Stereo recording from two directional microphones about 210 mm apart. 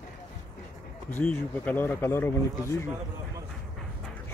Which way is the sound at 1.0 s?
5° left (ahead or behind).